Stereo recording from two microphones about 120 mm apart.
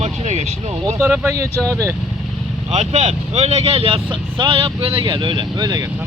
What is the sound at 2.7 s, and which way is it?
Speech, 65° right (ahead or behind).